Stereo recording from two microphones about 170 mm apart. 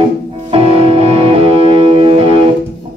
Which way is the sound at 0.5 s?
35° right (ahead or behind).